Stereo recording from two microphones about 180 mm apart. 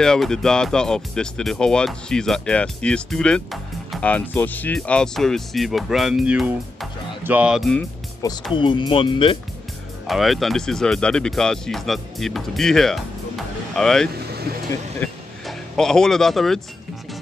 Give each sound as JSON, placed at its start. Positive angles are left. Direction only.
{"t": 0.0, "sound": "speech", "side_deg": 5}
{"t": 8.2, "sound": "speech", "side_deg": 25}
{"t": 10.0, "sound": "speech", "side_deg": 0}